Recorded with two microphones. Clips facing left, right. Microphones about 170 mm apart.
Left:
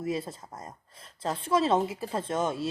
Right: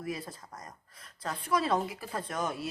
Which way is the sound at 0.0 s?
25° left (ahead or behind).